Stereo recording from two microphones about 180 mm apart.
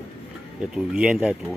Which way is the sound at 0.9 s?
5° right (ahead or behind).